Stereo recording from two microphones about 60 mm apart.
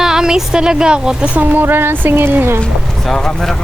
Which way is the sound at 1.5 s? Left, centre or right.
Right.